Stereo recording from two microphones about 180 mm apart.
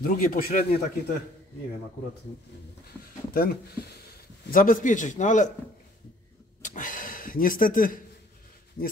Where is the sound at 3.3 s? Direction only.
55° left (ahead or behind).